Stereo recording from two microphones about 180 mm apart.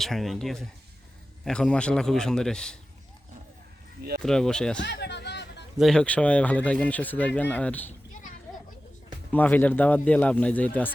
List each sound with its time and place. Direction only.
0.0 s a man's voice: centre (ahead or behind)
4.2 s a man's voice: 5° left (ahead or behind)
4.8 s a sound: 70° left (ahead or behind)
5.8 s speech: 5° left (ahead or behind)
9.3 s speech: 10° left (ahead or behind)